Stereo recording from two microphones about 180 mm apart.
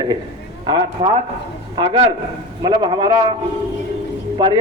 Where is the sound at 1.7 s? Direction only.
25° right (ahead or behind).